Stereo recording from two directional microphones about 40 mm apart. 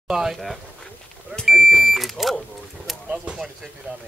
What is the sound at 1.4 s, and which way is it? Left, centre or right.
Smoke detector, centre.